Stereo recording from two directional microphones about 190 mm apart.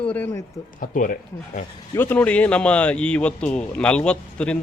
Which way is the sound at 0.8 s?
45° left (ahead or behind).